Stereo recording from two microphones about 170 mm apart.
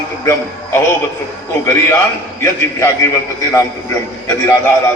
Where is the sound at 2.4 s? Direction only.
20° left (ahead or behind).